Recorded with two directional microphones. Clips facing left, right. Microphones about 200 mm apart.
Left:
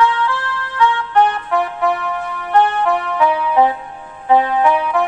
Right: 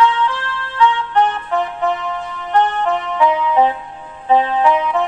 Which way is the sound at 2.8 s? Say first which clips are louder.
Even; 20° right (ahead or behind).